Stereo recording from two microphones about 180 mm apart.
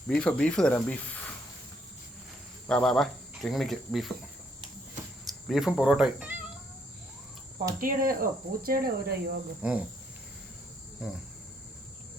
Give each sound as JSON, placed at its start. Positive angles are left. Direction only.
{"t": 0.1, "sound": "speech", "side_deg": 5}
{"t": 2.6, "sound": "speech", "side_deg": 5}
{"t": 5.2, "sound": "speech", "side_deg": 0}
{"t": 7.8, "sound": "speech", "side_deg": -50}
{"t": 9.6, "sound": "speech", "side_deg": -5}